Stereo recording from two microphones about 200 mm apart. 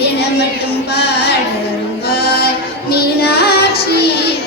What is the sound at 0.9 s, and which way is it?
Music, 55° left (ahead or behind).